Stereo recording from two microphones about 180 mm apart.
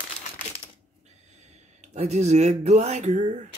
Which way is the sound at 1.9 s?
40° right (ahead or behind).